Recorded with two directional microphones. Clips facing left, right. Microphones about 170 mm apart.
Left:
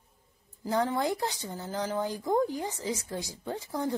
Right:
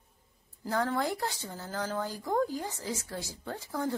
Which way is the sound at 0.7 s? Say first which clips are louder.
Left 2 dB; 15° left (ahead or behind).